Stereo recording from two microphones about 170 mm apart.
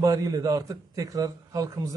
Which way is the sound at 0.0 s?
20° right (ahead or behind).